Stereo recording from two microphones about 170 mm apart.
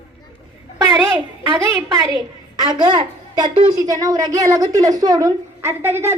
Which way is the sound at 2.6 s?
25° right (ahead or behind).